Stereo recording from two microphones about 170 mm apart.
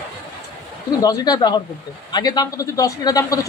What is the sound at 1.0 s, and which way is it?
Speech, 20° left (ahead or behind).